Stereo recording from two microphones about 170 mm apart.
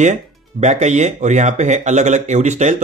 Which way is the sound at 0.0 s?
45° right (ahead or behind).